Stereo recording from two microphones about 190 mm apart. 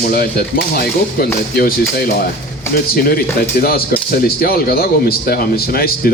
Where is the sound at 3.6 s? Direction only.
50° left (ahead or behind).